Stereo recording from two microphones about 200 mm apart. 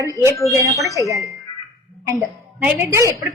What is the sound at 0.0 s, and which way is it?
Speech, 15° right (ahead or behind).